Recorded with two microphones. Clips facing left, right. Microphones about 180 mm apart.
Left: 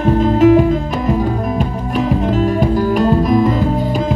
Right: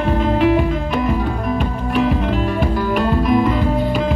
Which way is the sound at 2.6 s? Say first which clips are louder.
Left 4 dB; 40° left (ahead or behind).